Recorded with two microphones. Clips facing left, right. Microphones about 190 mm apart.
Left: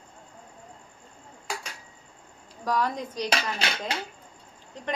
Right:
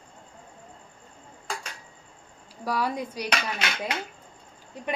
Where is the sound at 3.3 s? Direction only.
30° left (ahead or behind).